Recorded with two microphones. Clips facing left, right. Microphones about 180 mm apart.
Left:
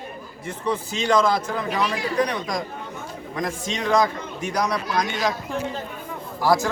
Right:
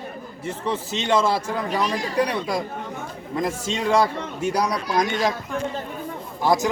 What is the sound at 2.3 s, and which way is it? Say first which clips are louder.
Speech: right 2 dB; 5° right (ahead or behind).